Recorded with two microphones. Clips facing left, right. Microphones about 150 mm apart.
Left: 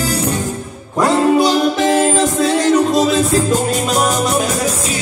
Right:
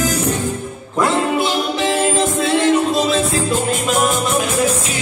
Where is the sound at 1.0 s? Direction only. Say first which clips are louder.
Left 5 dB; 40° left (ahead or behind).